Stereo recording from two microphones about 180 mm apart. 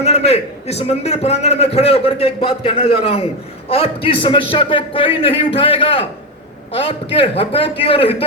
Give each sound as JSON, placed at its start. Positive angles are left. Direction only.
{"t": 0.0, "sound": "a man's voice", "side_deg": 35}